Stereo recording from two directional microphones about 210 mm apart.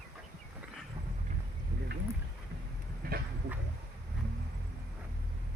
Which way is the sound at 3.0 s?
45° right (ahead or behind).